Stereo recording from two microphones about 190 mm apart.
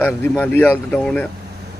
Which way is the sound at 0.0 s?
10° left (ahead or behind).